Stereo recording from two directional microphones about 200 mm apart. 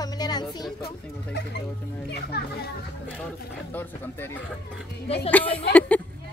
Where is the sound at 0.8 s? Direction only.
55° left (ahead or behind).